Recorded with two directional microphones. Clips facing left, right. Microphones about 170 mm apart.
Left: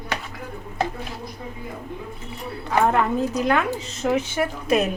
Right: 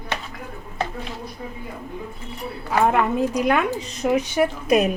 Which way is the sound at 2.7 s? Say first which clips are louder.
Right 1 dB; 10° right (ahead or behind).